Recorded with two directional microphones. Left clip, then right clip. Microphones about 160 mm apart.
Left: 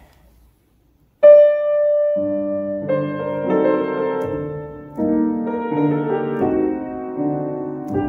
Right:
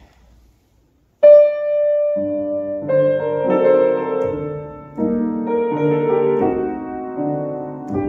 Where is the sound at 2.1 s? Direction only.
20° right (ahead or behind).